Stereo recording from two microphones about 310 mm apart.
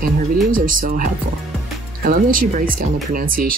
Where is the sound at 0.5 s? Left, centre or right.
Right.